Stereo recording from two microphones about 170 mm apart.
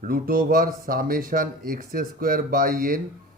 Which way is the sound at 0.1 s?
55° right (ahead or behind).